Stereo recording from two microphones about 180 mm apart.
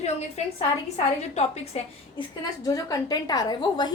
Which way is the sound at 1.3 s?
35° left (ahead or behind).